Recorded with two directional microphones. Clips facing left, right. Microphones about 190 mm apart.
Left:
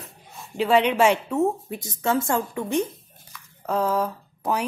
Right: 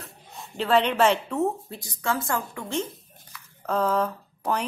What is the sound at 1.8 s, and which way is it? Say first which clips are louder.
A woman's voice: left 5 dB; 25° left (ahead or behind).